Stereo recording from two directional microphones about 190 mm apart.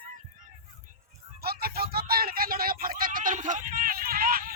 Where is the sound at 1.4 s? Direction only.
55° right (ahead or behind).